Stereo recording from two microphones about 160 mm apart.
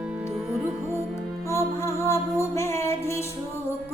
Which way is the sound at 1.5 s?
15° left (ahead or behind).